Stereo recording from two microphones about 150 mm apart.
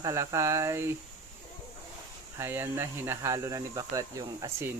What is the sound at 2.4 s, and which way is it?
Speech, 15° right (ahead or behind).